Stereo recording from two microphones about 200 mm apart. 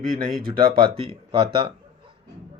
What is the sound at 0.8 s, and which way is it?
Speech, 25° right (ahead or behind).